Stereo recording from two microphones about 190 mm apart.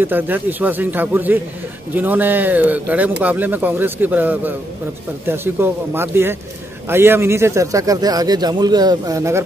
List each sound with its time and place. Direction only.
0.0 s speech: 10° right (ahead or behind)